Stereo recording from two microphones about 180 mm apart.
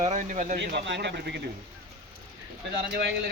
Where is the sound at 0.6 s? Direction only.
75° right (ahead or behind).